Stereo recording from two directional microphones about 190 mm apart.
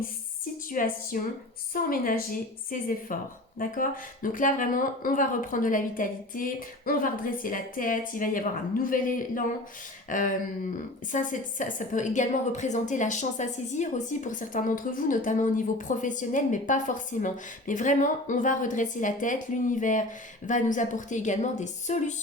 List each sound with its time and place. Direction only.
0.7 s a woman's voice: 45° left (ahead or behind)